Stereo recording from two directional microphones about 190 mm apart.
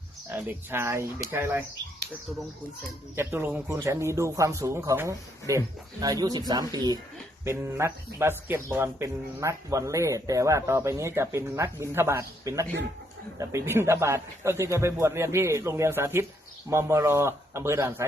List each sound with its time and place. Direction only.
0.4 s a man's voice: 15° right (ahead or behind)
3.2 s a man's voice: 10° right (ahead or behind)